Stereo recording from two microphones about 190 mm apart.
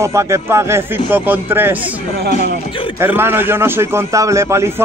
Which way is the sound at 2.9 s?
10° right (ahead or behind).